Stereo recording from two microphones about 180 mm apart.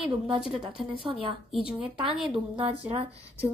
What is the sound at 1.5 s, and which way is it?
Speech, centre (ahead or behind).